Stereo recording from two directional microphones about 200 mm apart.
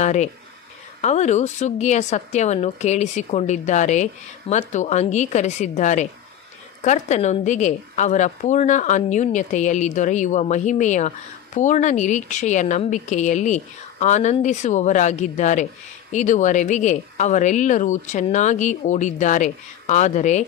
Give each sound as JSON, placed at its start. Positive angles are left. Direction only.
{"t": 0.0, "sound": "a woman's voice", "side_deg": 35}